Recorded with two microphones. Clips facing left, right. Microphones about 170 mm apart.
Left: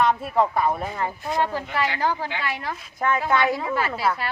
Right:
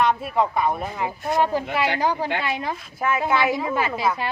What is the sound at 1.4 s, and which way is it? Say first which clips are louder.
A woman's voice: right 3 dB; 15° right (ahead or behind).